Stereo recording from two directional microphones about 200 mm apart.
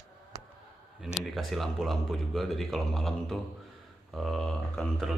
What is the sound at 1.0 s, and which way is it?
Speech, centre (ahead or behind).